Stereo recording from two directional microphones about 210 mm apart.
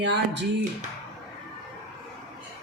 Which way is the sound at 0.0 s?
55° right (ahead or behind).